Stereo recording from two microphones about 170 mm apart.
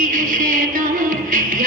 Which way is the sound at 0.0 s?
50° right (ahead or behind).